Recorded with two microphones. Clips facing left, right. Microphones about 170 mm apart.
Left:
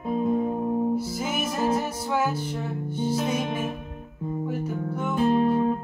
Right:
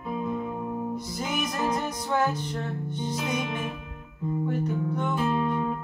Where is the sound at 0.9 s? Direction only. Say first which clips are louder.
Left 4 dB; 5° left (ahead or behind).